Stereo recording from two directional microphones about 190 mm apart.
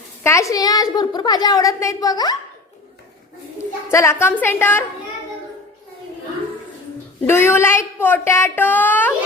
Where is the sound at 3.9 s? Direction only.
15° left (ahead or behind).